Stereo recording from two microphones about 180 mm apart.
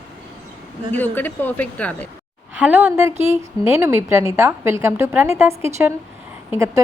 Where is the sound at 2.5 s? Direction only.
10° right (ahead or behind).